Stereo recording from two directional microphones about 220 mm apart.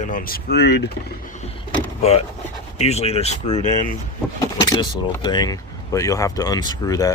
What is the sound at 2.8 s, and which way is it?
Speech, 30° left (ahead or behind).